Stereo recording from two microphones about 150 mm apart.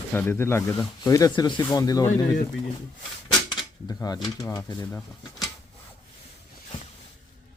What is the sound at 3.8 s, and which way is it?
Speech, 25° left (ahead or behind).